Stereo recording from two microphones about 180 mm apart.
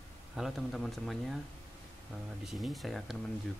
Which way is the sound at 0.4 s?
Centre (ahead or behind).